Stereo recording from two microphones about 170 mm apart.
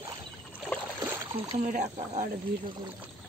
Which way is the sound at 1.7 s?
45° right (ahead or behind).